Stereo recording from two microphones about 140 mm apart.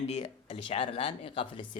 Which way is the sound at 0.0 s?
50° left (ahead or behind).